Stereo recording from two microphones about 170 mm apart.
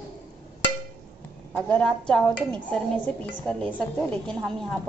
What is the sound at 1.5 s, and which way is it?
A woman's voice, 5° left (ahead or behind).